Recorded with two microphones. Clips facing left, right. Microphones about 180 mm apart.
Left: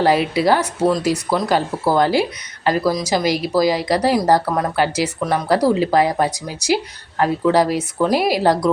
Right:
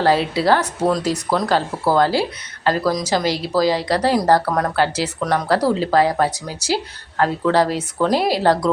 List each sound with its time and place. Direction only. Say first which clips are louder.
0.0 s speech: left 1 dB; 15° left (ahead or behind)